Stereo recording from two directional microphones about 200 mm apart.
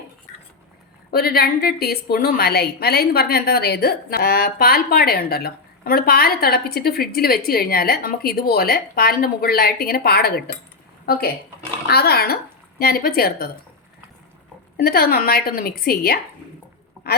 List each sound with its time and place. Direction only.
1.1 s a woman's voice: 50° left (ahead or behind)
14.8 s a woman's voice: 50° left (ahead or behind)